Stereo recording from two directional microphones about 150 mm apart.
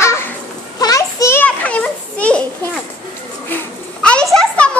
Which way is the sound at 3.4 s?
10° left (ahead or behind).